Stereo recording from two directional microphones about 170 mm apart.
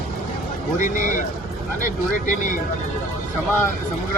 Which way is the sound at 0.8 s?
50° left (ahead or behind).